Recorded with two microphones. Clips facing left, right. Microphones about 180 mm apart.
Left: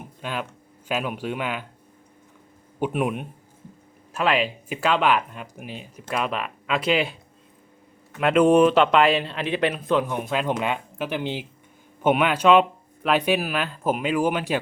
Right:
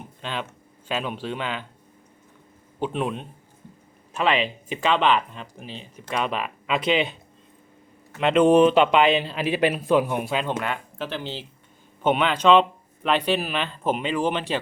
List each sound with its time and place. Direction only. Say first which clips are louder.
0.2 s speech: left 1 dB; 5° left (ahead or behind)
2.8 s speech: left 2 dB; 10° left (ahead or behind)
8.2 s speech: even; centre (ahead or behind)
10.3 s speech: left 6 dB; 15° left (ahead or behind)